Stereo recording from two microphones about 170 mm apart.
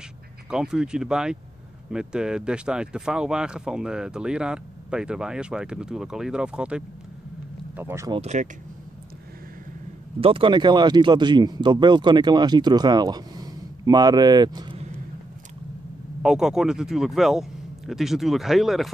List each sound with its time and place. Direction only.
0.5 s speech: 5° right (ahead or behind)
8.1 s speech: 40° right (ahead or behind)
10.2 s speech: 30° right (ahead or behind)
16.2 s speech: 5° right (ahead or behind)